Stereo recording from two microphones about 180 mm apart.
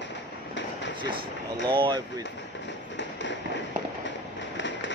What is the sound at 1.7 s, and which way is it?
Speech, 25° right (ahead or behind).